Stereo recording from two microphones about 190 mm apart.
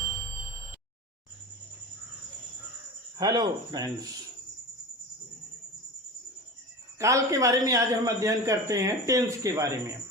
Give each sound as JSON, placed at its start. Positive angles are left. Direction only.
{"t": 3.2, "sound": "speech", "side_deg": -20}
{"t": 7.0, "sound": "a man's voice", "side_deg": -15}